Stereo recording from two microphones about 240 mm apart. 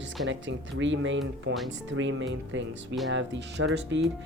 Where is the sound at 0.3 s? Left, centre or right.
Right.